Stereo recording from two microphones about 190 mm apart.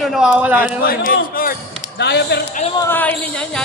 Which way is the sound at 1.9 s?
60° left (ahead or behind).